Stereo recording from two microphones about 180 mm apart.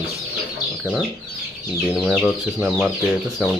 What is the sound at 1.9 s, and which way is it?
Speech, 5° right (ahead or behind).